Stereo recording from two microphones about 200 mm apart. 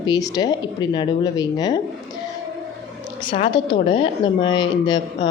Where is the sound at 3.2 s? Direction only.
25° left (ahead or behind).